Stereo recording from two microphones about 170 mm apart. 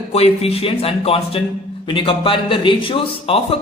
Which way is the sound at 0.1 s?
35° left (ahead or behind).